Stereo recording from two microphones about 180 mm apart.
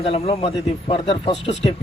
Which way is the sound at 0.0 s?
30° left (ahead or behind).